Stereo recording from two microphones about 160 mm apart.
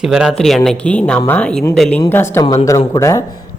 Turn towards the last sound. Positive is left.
turn(degrees=20)  # may be behind; listen again after turning